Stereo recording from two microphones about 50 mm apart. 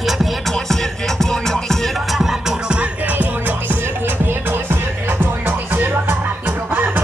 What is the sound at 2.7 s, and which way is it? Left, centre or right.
Music, right.